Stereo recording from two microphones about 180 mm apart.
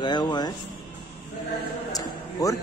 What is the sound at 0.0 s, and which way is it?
Speech, 25° left (ahead or behind).